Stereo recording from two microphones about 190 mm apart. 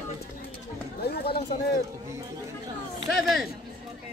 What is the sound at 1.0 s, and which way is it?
Speech, 55° left (ahead or behind).